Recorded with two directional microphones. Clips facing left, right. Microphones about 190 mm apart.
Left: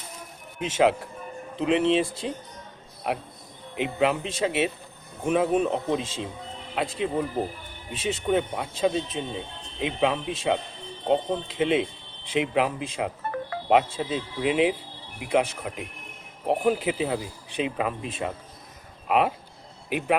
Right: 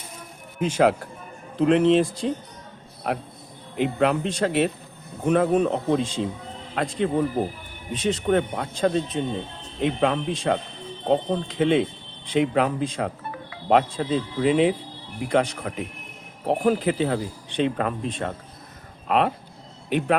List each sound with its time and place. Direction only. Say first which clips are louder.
0.6 s speech: right 2 dB; centre (ahead or behind)